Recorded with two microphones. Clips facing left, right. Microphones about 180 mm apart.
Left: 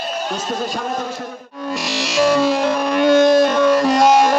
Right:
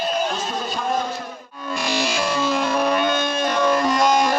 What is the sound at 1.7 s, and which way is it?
Music, 85° left.